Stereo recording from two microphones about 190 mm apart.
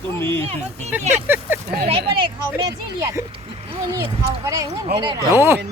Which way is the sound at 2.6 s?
20° right (ahead or behind).